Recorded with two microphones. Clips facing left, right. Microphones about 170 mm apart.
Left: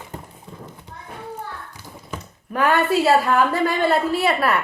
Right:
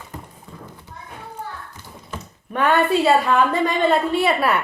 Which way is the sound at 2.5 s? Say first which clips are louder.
Right 1 dB; centre (ahead or behind).